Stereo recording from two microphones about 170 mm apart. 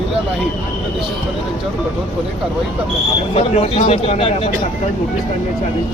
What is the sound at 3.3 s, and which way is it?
Speech, 35° left (ahead or behind).